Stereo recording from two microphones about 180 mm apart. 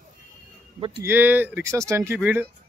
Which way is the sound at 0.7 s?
30° right (ahead or behind).